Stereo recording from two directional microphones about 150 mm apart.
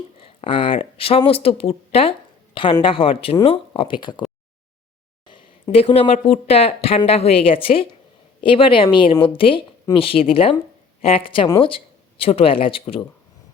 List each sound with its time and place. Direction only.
0.2 s speech: 35° left (ahead or behind)
5.3 s speech: 35° left (ahead or behind)